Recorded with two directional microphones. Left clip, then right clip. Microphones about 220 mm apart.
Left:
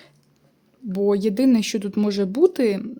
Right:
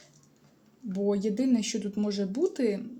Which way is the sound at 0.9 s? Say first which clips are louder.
Left 8 dB; 45° left (ahead or behind).